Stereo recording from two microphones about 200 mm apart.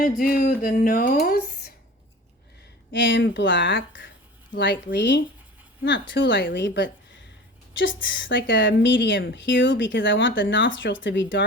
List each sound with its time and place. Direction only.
0.0 s speech: 45° left (ahead or behind)
2.9 s a woman's voice: 65° left (ahead or behind)